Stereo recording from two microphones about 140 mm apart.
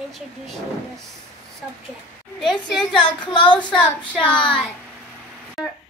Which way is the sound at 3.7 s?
10° left (ahead or behind).